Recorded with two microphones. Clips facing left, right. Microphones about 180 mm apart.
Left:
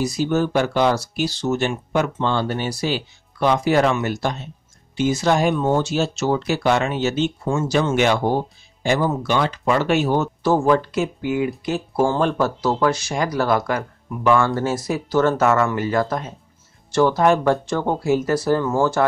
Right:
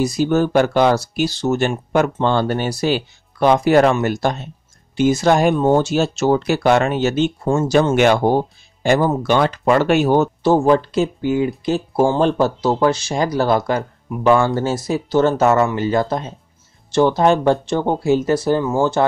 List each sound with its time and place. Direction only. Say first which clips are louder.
0.0 s speech: right 4 dB; 50° right (ahead or behind)
10.4 s speech: even; 25° right (ahead or behind)